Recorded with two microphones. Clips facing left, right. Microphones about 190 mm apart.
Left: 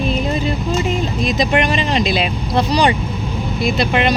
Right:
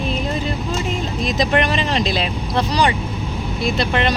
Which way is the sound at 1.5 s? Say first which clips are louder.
Left 2 dB; 15° left (ahead or behind).